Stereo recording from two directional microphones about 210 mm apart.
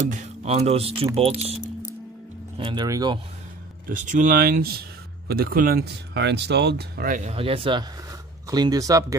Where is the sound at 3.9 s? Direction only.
35° right (ahead or behind).